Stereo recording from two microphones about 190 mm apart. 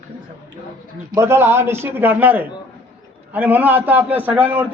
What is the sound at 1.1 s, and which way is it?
A man's voice, 15° right (ahead or behind).